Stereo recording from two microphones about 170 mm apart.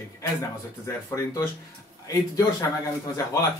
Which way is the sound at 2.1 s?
20° left (ahead or behind).